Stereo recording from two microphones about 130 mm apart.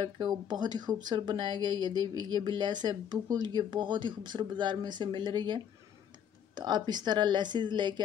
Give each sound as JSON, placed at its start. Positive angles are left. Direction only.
{"t": 0.0, "sound": "speech", "side_deg": -35}